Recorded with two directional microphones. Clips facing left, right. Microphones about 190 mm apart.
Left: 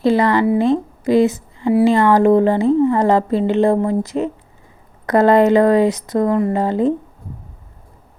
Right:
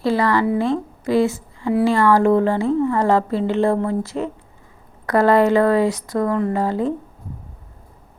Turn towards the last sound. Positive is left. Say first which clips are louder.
# left 4 dB
turn(degrees=20)  # may be behind; listen again after turning